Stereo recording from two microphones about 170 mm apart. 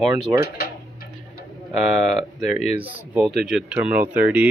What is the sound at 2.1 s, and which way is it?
Speech, centre (ahead or behind).